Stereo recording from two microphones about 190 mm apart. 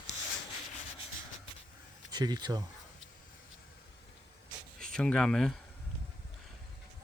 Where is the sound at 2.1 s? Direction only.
20° right (ahead or behind).